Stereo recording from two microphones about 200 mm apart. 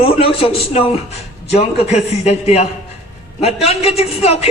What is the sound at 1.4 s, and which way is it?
A man's voice, 35° left (ahead or behind).